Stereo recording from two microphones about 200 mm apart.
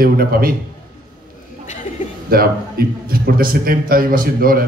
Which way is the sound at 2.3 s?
50° right (ahead or behind).